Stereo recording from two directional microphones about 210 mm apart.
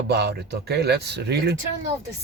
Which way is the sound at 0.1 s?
55° right (ahead or behind).